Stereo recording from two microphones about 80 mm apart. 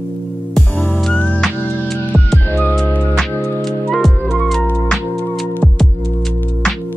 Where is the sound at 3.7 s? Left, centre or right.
Centre.